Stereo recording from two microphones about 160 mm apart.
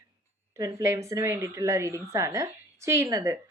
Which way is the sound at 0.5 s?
20° right (ahead or behind).